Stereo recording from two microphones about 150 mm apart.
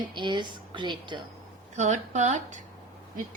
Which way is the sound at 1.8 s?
50° right (ahead or behind).